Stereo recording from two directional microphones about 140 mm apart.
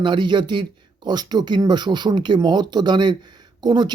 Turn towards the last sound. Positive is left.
turn(degrees=-30)  # may be behind; listen again after turning